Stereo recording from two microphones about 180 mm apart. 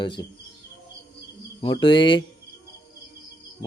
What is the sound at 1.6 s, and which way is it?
Speech, 25° left (ahead or behind).